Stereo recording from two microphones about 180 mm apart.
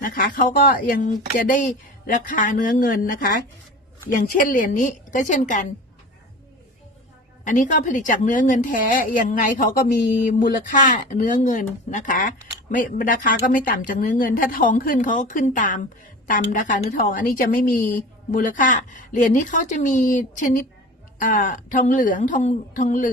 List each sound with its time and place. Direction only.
0.0 s a woman's voice: 50° left (ahead or behind)
7.4 s a woman's voice: 45° left (ahead or behind)